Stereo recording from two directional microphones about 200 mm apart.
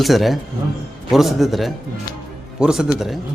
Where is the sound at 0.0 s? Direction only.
Centre (ahead or behind).